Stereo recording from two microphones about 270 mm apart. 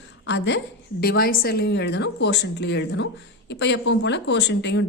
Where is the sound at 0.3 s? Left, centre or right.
Left.